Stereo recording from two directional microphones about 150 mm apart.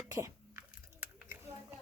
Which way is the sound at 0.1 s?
20° right (ahead or behind).